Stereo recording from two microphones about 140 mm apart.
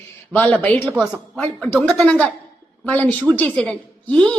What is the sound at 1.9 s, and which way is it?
A woman's voice, 10° left (ahead or behind).